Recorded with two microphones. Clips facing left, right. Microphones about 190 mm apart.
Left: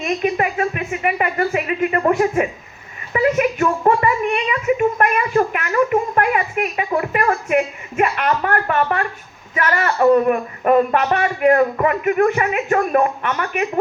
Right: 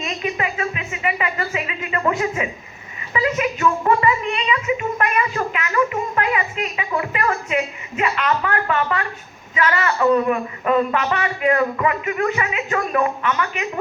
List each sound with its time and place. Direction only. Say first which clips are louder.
0.0 s speech: left 5 dB; 55° left (ahead or behind)